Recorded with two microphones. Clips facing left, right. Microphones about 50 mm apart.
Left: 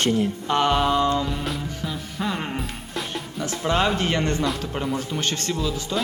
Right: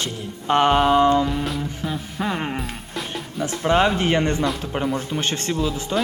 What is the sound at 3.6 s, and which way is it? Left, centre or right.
Speech, centre.